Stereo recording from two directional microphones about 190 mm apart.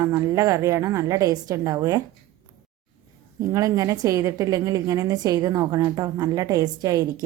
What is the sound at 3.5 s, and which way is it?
A woman's voice, 15° right (ahead or behind).